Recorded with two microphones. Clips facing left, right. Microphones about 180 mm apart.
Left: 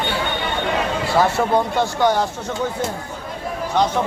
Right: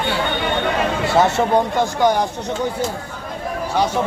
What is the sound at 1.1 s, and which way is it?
Speech, 20° right (ahead or behind).